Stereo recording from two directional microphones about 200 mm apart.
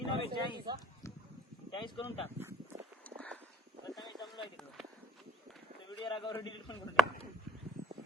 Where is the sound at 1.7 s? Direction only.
25° left (ahead or behind).